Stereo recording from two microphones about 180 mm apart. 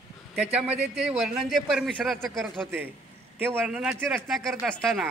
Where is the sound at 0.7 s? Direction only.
35° right (ahead or behind).